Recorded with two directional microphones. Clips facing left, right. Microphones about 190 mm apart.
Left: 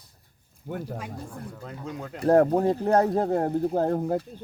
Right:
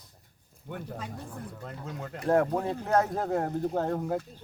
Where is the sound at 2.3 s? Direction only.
40° left (ahead or behind).